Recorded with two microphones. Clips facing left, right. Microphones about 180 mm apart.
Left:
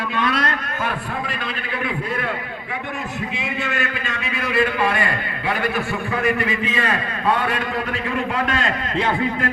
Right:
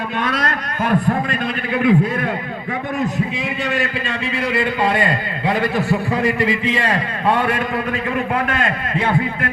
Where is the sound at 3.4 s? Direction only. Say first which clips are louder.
Right 4 dB; 35° right (ahead or behind).